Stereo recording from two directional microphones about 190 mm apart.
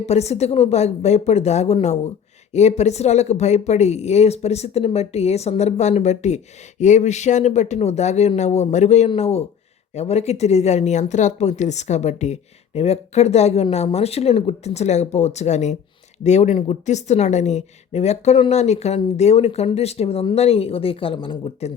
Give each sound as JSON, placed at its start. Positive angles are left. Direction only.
{"t": 0.0, "sound": "speech", "side_deg": 35}